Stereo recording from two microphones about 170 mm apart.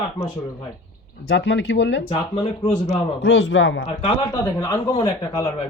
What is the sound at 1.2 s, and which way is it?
Speech, 90° left.